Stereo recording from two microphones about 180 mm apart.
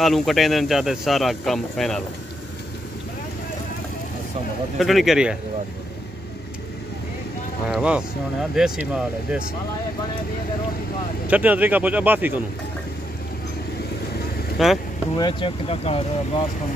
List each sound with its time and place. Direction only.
0.0 s speech: centre (ahead or behind)
4.7 s speech: centre (ahead or behind)
7.6 s speech: 5° right (ahead or behind)
11.2 s speech: 10° right (ahead or behind)
14.6 s speech: centre (ahead or behind)
15.1 s speech: 25° left (ahead or behind)